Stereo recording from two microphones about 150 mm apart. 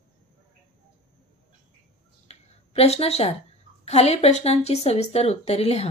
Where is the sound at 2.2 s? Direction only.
45° left (ahead or behind).